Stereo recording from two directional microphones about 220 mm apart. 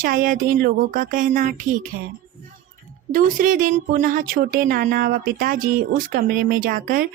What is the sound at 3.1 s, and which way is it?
A woman's voice, 40° right (ahead or behind).